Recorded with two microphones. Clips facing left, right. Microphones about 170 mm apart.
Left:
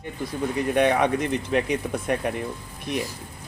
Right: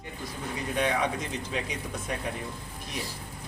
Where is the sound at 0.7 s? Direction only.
65° left (ahead or behind).